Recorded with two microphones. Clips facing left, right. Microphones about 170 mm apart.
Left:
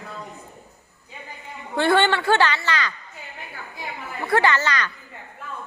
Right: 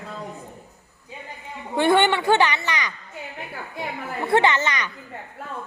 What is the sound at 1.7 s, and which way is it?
Speech, 15° right (ahead or behind).